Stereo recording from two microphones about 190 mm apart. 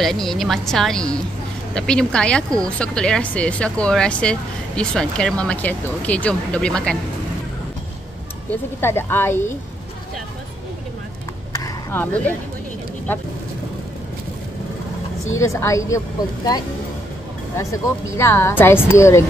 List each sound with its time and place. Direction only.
0.0 s speech: centre (ahead or behind)
8.5 s a woman's voice: 10° left (ahead or behind)
11.5 s a sound: 15° left (ahead or behind)
15.4 s a woman's voice: 15° left (ahead or behind)
17.6 s a woman's voice: 15° left (ahead or behind)